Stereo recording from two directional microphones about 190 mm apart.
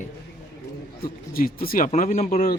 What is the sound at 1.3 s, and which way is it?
Speech, 50° left (ahead or behind).